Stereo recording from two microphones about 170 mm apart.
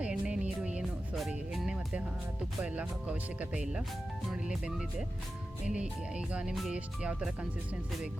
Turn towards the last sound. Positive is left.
turn(degrees=-5)  # may be behind; listen again after turning